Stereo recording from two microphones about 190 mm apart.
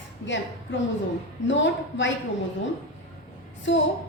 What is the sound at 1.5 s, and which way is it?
Speech, 75° left (ahead or behind).